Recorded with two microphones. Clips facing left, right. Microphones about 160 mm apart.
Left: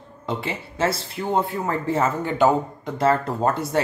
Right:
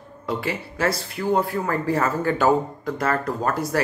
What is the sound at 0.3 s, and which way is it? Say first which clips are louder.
Speech: right 1 dB; 25° left (ahead or behind).